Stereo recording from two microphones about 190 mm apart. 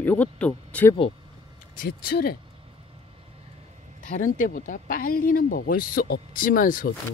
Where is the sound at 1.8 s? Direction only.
55° left (ahead or behind).